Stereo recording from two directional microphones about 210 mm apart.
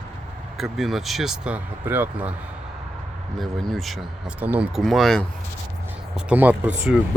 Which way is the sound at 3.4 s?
Centre (ahead or behind).